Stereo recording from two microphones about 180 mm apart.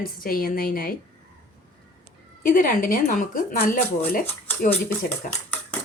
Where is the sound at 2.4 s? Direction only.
50° left (ahead or behind).